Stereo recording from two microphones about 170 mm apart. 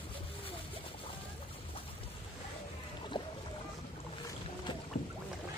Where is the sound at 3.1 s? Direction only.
25° left (ahead or behind).